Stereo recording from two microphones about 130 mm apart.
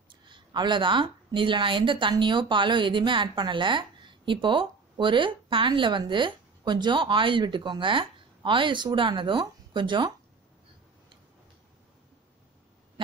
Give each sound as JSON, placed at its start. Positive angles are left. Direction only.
{"t": 0.3, "sound": "a woman's voice", "side_deg": -35}